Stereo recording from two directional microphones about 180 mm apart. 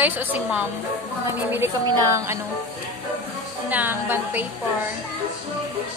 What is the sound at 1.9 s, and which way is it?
Speech, 15° right (ahead or behind).